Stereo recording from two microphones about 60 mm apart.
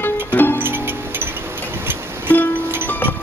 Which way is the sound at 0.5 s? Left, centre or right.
Right.